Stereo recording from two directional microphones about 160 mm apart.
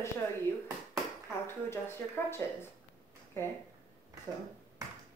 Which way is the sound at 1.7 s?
15° left (ahead or behind).